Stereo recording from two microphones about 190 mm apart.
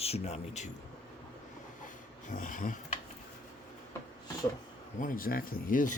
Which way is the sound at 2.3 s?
45° left (ahead or behind).